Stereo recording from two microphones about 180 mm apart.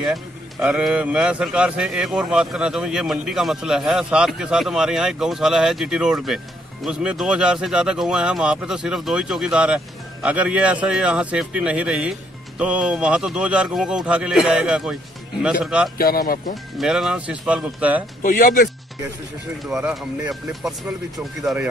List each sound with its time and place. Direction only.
0.0 s a man's voice: 5° right (ahead or behind)
16.0 s speech: 55° left (ahead or behind)
16.7 s a man's voice: centre (ahead or behind)
18.2 s speech: 50° left (ahead or behind)
19.6 s a man's voice: 5° right (ahead or behind)